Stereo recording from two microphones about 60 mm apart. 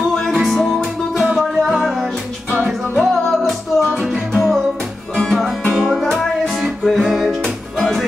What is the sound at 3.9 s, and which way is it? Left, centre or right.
Music, centre.